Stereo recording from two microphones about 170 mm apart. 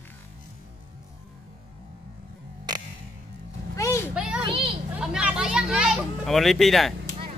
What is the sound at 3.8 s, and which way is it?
Vehicle, 15° left (ahead or behind).